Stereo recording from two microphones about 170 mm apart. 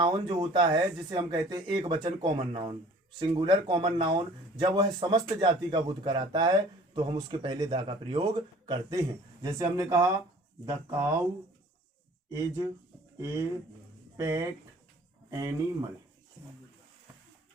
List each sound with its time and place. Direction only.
0.0 s a man's voice: 25° right (ahead or behind)
13.1 s a man's voice: 20° right (ahead or behind)